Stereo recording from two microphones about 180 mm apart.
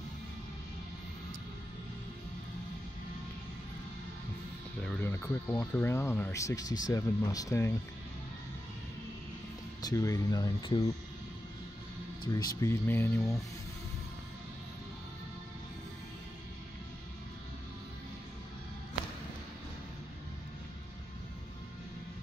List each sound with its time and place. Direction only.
5.0 s speech: 15° left (ahead or behind)
9.8 s speech: 20° left (ahead or behind)
12.3 s speech: 20° left (ahead or behind)